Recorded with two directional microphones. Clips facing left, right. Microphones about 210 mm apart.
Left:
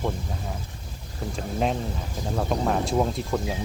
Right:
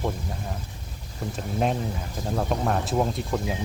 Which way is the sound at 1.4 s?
Centre (ahead or behind).